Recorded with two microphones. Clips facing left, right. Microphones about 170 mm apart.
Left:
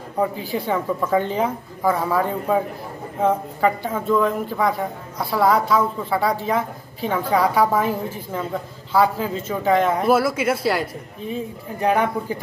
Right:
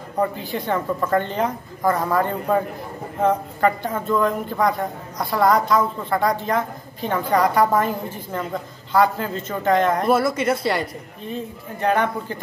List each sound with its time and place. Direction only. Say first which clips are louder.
0.2 s a woman's voice: left 1 dB; 5° left (ahead or behind)